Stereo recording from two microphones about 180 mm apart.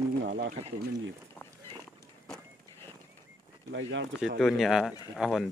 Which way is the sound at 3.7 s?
90° right.